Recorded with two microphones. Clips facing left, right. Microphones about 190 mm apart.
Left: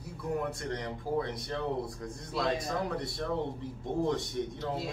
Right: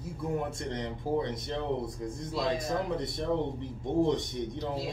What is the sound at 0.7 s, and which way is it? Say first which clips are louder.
A man's voice: right 3 dB; 20° right (ahead or behind).